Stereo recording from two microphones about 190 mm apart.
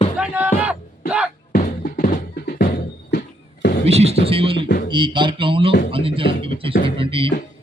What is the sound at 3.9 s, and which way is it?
Music, 35° right (ahead or behind).